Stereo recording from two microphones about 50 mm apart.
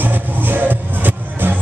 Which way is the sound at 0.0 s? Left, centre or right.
Right.